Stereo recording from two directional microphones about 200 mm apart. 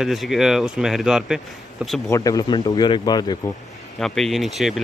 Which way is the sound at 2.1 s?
15° left (ahead or behind).